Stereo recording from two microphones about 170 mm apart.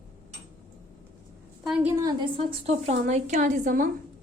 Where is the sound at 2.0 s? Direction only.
30° right (ahead or behind).